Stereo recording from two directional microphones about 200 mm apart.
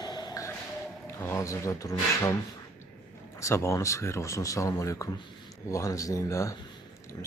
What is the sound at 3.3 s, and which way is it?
Speech, 15° left (ahead or behind).